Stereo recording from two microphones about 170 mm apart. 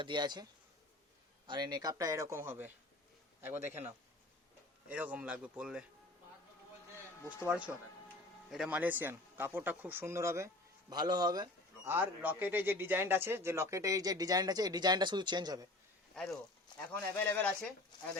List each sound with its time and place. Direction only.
0.0 s a man's voice: 25° right (ahead or behind)
1.5 s a man's voice: 25° right (ahead or behind); by 5.8 s 5° right (ahead or behind)
6.9 s a sound: 10° right (ahead or behind)
8.4 s speech: 5° right (ahead or behind); by 11.4 s 25° right (ahead or behind)
11.9 s a man's voice: 10° right (ahead or behind)
16.1 s speech: 5° left (ahead or behind)